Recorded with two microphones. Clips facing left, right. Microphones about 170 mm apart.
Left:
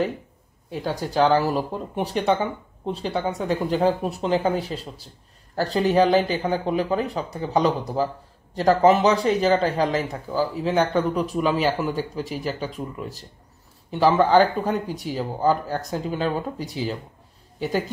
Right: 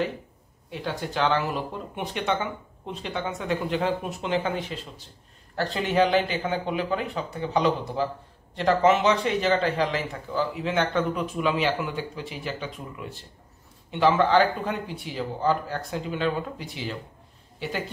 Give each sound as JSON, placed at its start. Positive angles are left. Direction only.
{"t": 0.7, "sound": "a woman's voice", "side_deg": 40}